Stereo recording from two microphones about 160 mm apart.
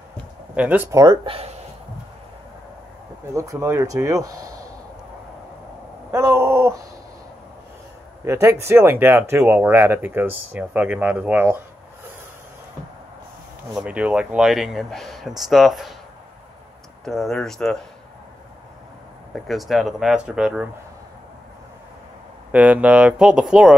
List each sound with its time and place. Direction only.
0.6 s speech: 10° right (ahead or behind)
1.0 s speech: 35° right (ahead or behind)
3.3 s speech: 20° right (ahead or behind)
6.1 s speech: 15° right (ahead or behind)
8.3 s speech: 15° right (ahead or behind)
13.7 s speech: 10° right (ahead or behind)
17.0 s speech: centre (ahead or behind)
19.4 s speech: centre (ahead or behind)
22.5 s speech: 10° right (ahead or behind)